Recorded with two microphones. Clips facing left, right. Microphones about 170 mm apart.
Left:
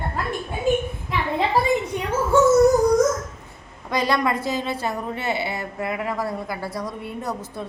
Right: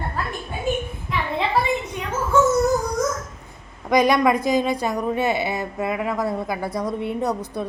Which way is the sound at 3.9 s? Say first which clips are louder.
Right 5 dB; 20° right (ahead or behind).